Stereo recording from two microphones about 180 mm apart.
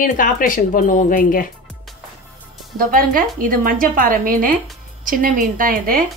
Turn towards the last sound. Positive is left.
turn(degrees=-50)  # may be behind; listen again after turning